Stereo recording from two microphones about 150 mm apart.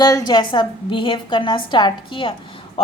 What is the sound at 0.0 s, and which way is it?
A woman's voice, 25° left (ahead or behind).